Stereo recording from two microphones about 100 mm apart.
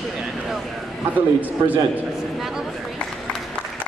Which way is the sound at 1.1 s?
15° right (ahead or behind).